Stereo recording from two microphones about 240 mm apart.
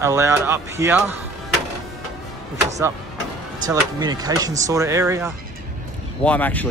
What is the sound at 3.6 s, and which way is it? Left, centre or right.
Speech, centre.